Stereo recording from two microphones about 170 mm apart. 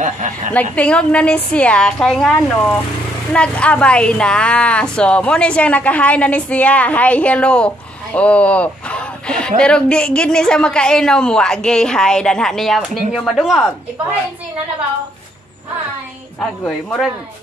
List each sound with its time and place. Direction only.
0.0 s a woman's voice: 50° right (ahead or behind)
0.5 s a woman's voice: 10° left (ahead or behind)
3.3 s a woman's voice: 5° left (ahead or behind)
16.3 s a woman's voice: 10° left (ahead or behind)